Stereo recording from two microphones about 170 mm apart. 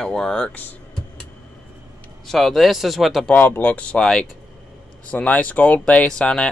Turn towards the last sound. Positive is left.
turn(degrees=5)  # may be behind; listen again after turning